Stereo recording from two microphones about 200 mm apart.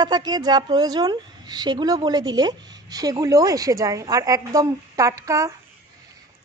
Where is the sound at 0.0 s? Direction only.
20° right (ahead or behind).